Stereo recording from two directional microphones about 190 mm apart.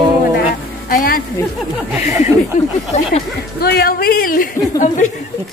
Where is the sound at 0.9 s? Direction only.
50° left (ahead or behind).